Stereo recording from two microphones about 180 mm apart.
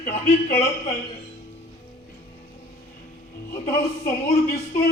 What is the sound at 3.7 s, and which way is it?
Music, 55° left (ahead or behind).